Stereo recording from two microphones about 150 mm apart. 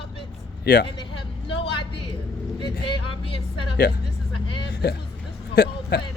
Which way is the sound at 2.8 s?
35° left (ahead or behind).